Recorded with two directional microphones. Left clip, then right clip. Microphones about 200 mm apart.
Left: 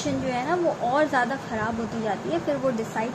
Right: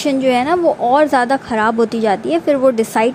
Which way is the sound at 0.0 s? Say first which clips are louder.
Right 12 dB; 50° right (ahead or behind).